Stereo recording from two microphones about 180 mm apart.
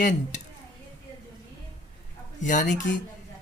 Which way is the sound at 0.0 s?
45° left (ahead or behind).